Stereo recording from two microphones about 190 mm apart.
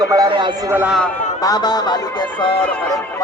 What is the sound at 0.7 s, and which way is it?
Speech, 10° right (ahead or behind).